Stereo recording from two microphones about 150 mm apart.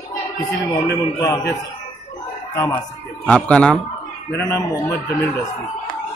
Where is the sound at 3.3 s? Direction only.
5° left (ahead or behind).